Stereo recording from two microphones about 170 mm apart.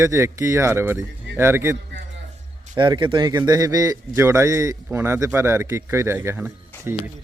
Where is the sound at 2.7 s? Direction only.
25° right (ahead or behind).